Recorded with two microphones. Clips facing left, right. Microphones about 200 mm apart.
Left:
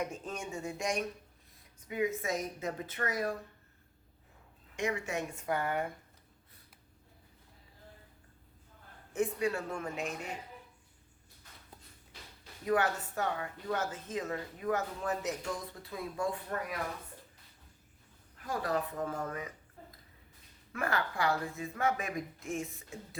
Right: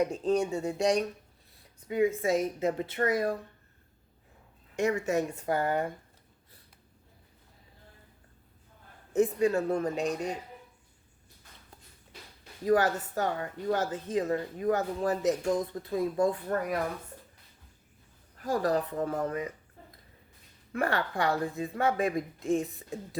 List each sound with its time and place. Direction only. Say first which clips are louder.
0.0 s a woman's voice: right 11 dB; 35° right (ahead or behind)
4.8 s speech: right 7 dB; 40° right (ahead or behind)
9.1 s speech: right 7 dB; 40° right (ahead or behind)
12.6 s speech: right 5 dB; 35° right (ahead or behind)
18.3 s speech: right 6 dB; 40° right (ahead or behind)
20.7 s speech: right 5 dB; 35° right (ahead or behind)